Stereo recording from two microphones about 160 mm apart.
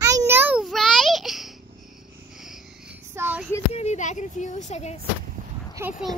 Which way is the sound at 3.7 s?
45° left (ahead or behind).